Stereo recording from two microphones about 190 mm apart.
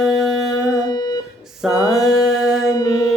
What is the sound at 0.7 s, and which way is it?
Music, 20° left (ahead or behind).